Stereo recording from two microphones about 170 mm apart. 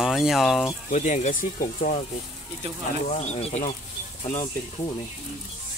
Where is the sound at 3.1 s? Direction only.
40° left (ahead or behind).